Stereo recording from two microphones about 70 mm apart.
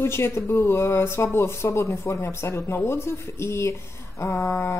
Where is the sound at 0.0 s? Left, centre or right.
Left.